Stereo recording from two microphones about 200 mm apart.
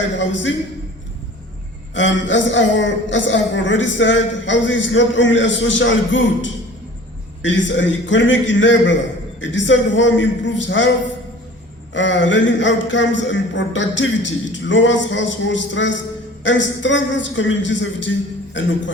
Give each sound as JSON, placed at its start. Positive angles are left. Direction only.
{"t": 0.0, "sound": "a man's voice", "side_deg": 65}
{"t": 2.0, "sound": "a man's voice", "side_deg": 65}
{"t": 11.9, "sound": "a man's voice", "side_deg": 65}